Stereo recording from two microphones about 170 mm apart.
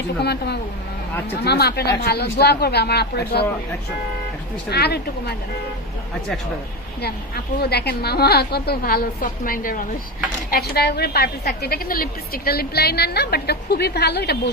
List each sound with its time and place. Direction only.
0.2 s a woman's voice: 75° left (ahead or behind)
4.7 s a woman's voice: 70° left (ahead or behind)
7.0 s a woman's voice: 70° left (ahead or behind)
10.5 s a woman's voice: 70° left (ahead or behind)